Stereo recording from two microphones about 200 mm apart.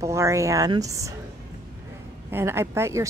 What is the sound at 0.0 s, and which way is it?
A woman's voice, 15° right (ahead or behind).